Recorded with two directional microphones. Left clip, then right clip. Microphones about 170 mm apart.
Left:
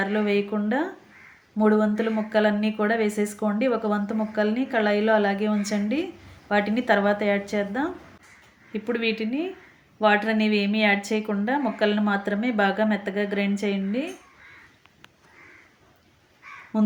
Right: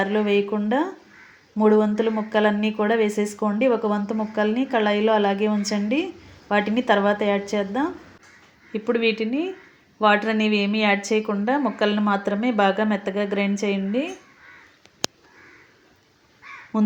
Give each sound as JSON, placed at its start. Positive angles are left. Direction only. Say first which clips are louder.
{"t": 0.0, "sound": "speech", "louder": "right 3 dB", "side_deg": -15}
{"t": 16.7, "sound": "speech", "louder": "right 1 dB", "side_deg": -10}